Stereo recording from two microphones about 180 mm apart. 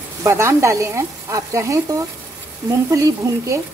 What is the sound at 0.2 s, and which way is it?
Speech, 15° right (ahead or behind).